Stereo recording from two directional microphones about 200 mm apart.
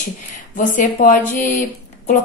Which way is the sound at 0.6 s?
40° left (ahead or behind).